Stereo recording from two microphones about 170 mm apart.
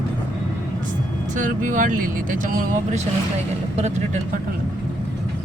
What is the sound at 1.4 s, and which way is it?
Speech, 50° right (ahead or behind).